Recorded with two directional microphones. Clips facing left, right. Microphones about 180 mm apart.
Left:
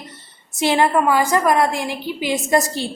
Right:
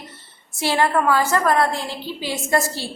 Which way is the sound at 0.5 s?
20° left (ahead or behind).